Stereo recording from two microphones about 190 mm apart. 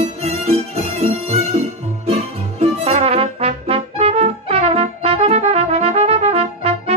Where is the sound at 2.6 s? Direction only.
30° right (ahead or behind).